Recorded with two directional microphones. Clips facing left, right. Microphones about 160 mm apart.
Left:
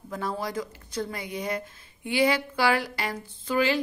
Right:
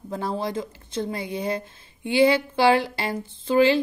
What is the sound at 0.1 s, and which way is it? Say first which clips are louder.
Speech: right 4 dB; 30° right (ahead or behind).